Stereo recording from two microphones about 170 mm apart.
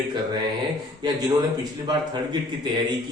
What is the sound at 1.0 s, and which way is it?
A man's voice, 25° right (ahead or behind).